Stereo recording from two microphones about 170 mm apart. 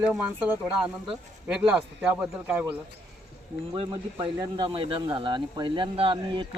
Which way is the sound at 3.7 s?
30° right (ahead or behind).